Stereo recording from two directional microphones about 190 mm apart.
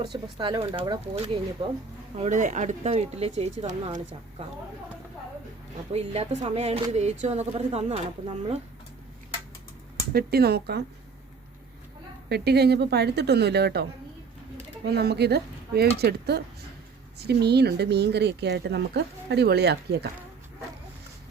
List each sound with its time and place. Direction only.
0.0 s speech: 25° right (ahead or behind)
5.9 s speech: 35° right (ahead or behind)
10.1 s speech: 55° right (ahead or behind)
12.3 s speech: 60° right (ahead or behind)
14.8 s speech: 60° right (ahead or behind)